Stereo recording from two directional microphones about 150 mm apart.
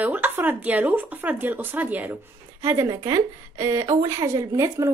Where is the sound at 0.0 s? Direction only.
10° right (ahead or behind).